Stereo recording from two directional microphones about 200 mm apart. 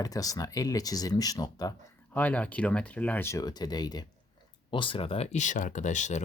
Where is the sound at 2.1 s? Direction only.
5° left (ahead or behind); by 6.2 s 35° left (ahead or behind).